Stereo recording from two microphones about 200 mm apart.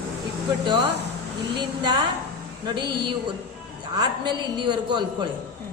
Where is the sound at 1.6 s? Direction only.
20° right (ahead or behind).